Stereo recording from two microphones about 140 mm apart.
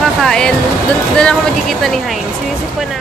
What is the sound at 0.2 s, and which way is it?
Speech, 5° left (ahead or behind).